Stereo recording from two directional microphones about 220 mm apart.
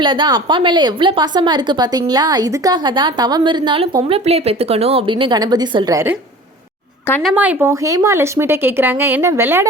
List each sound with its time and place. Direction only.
0.0 s a woman's voice: 20° right (ahead or behind)
7.1 s speech: centre (ahead or behind)